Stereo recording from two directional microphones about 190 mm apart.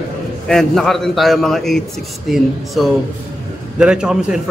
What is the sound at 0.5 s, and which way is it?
A man's voice, centre (ahead or behind).